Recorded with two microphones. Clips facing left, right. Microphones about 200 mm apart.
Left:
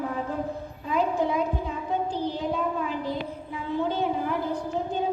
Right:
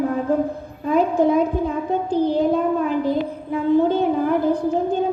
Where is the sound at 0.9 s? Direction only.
50° right (ahead or behind).